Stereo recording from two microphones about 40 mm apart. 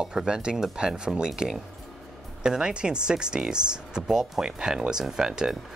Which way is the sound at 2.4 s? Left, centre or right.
Right.